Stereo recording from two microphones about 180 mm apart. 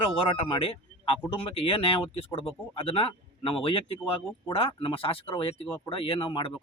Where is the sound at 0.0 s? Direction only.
30° left (ahead or behind).